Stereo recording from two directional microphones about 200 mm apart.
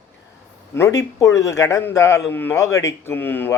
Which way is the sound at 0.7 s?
15° left (ahead or behind).